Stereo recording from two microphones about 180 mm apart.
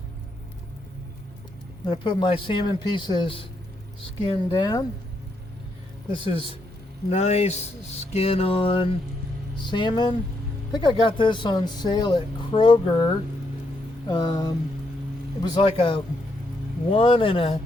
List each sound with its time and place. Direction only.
1.9 s speech: 25° left (ahead or behind)
6.1 s speech: 30° left (ahead or behind)
7.1 s a sound: 35° left (ahead or behind)
9.6 s speech: 25° left (ahead or behind)